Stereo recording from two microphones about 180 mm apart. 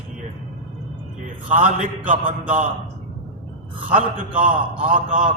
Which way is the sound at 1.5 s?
45° right (ahead or behind).